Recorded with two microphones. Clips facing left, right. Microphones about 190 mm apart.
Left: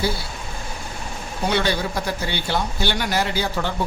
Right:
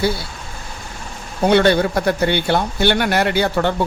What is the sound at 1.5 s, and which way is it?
Speech, 60° right (ahead or behind).